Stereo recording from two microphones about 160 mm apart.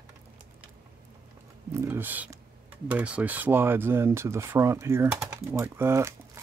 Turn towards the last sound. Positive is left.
turn(degrees=-15)  # may be behind; listen again after turning